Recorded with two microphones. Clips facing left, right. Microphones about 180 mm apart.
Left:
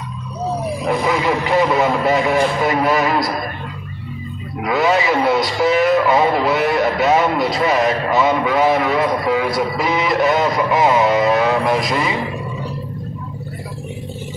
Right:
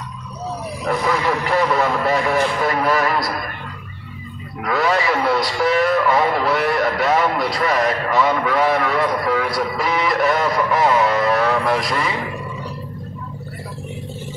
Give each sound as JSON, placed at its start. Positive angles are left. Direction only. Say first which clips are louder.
{"t": 0.8, "sound": "a man's voice", "louder": "left 1 dB", "side_deg": 20}
{"t": 4.6, "sound": "a man's voice", "louder": "left 3 dB", "side_deg": 20}